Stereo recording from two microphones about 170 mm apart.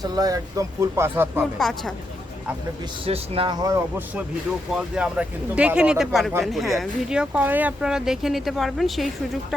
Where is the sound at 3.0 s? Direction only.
35° right (ahead or behind).